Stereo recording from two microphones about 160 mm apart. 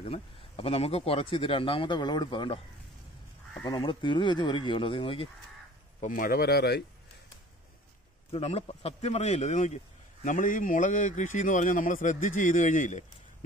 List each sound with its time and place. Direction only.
0.0 s speech: 35° left (ahead or behind)
3.6 s speech: 30° left (ahead or behind)
5.9 s speech: 55° left (ahead or behind); by 6.8 s 80° left
8.3 s a man's voice: 40° left (ahead or behind)